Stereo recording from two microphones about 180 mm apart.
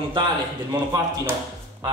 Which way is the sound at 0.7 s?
15° right (ahead or behind).